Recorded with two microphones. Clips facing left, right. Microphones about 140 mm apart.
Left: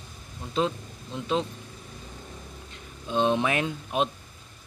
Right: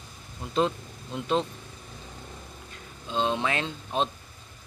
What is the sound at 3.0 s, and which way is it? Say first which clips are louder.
Speech: left 3 dB; 20° left (ahead or behind).